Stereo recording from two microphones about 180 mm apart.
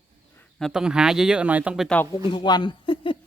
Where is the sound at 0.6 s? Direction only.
5° right (ahead or behind).